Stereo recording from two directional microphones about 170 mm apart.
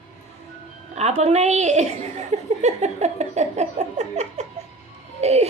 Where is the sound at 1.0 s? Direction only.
40° right (ahead or behind).